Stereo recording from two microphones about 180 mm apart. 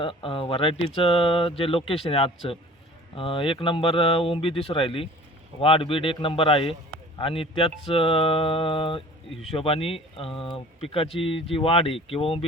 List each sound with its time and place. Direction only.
0.0 s speech: 30° left (ahead or behind)